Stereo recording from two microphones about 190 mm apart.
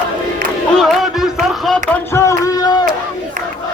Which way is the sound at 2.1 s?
15° left (ahead or behind).